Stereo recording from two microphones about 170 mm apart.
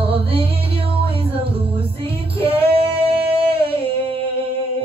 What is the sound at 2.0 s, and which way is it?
Female singing, 35° right (ahead or behind).